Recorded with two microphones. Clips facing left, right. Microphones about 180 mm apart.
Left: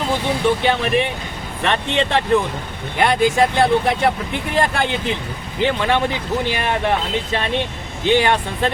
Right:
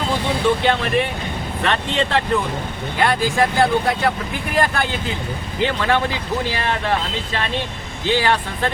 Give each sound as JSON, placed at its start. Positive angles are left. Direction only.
{"t": 0.6, "sound": "speech", "side_deg": 20}